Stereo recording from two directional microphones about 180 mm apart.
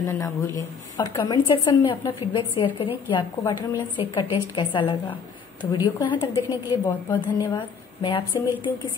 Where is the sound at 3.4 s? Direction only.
20° left (ahead or behind).